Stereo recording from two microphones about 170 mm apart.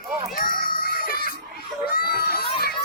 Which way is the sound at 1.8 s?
65° left (ahead or behind).